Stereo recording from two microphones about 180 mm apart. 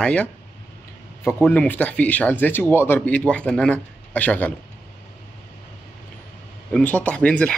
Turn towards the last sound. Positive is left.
turn(degrees=5)  # may be behind; listen again after turning